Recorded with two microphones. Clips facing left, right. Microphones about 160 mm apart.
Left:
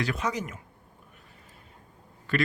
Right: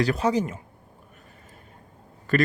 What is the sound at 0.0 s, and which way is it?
Speech, 35° right (ahead or behind).